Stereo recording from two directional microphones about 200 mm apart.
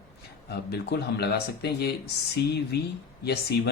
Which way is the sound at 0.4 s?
55° left (ahead or behind).